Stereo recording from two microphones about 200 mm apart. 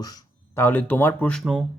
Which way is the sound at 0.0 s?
15° left (ahead or behind).